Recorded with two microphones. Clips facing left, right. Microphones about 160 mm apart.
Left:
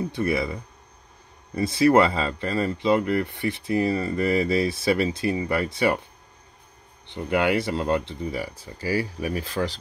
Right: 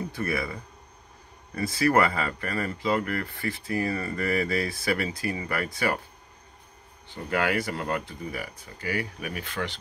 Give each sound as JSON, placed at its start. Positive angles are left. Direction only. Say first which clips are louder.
{"t": 0.1, "sound": "speech", "louder": "left 5 dB", "side_deg": 20}
{"t": 7.1, "sound": "speech", "louder": "left 4 dB", "side_deg": 20}